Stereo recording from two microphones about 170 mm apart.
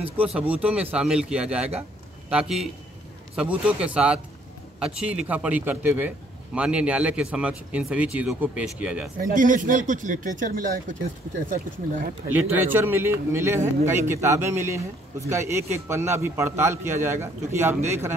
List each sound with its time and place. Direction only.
0.0 s a man's voice: 10° right (ahead or behind)
9.2 s speech: 50° right (ahead or behind)
12.7 s a man's voice: 10° right (ahead or behind)